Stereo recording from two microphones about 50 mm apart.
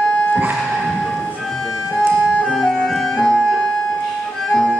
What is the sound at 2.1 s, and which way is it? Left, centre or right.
Music, left.